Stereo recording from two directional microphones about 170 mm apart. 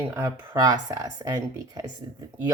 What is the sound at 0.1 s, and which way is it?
Speech, 20° right (ahead or behind).